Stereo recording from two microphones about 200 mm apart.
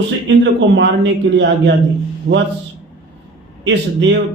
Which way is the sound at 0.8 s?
60° right (ahead or behind).